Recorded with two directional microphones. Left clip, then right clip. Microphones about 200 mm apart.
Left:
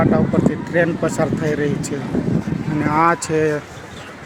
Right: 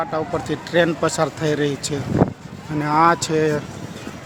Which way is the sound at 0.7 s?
Centre (ahead or behind).